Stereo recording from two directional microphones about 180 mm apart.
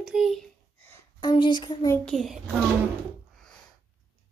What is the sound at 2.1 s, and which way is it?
Speech, centre (ahead or behind).